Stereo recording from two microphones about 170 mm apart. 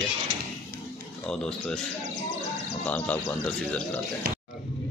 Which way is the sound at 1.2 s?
5° left (ahead or behind).